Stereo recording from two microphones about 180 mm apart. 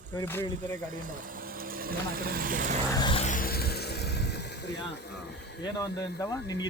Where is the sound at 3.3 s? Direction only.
50° left (ahead or behind); by 5.6 s 70° left (ahead or behind).